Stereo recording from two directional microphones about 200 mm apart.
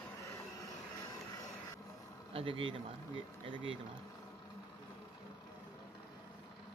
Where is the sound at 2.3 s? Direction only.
25° right (ahead or behind).